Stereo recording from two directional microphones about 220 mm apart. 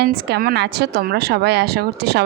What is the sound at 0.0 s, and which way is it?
A woman's voice, 50° right (ahead or behind).